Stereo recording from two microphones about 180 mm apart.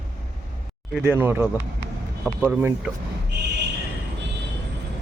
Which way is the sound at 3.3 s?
70° right (ahead or behind).